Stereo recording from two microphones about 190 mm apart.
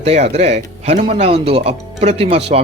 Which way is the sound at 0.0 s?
35° right (ahead or behind).